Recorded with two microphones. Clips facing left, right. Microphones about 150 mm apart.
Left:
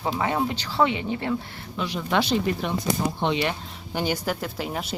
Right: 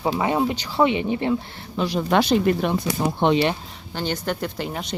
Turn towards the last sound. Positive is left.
turn(degrees=5)  # may be behind; listen again after turning